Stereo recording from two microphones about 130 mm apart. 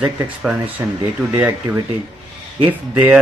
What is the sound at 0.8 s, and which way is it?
Speech, 25° right (ahead or behind).